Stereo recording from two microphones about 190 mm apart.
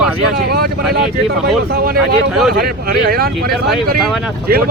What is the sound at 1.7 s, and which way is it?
Speech, 55° right (ahead or behind).